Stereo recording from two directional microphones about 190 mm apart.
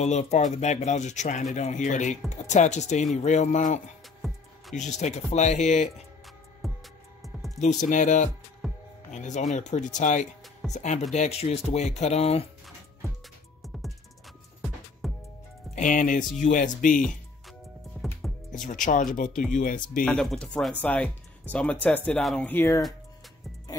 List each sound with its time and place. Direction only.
0.0 s speech: 35° left (ahead or behind)
6.6 s music: centre (ahead or behind)
7.9 s speech: 40° left (ahead or behind)
8.6 s music: centre (ahead or behind)
9.1 s speech: 40° left (ahead or behind)
15.0 s music: centre (ahead or behind)
15.7 s speech: 40° left (ahead or behind)
17.9 s music: 5° left (ahead or behind)
18.5 s speech: 45° left (ahead or behind)
20.1 s speech: 5° left (ahead or behind)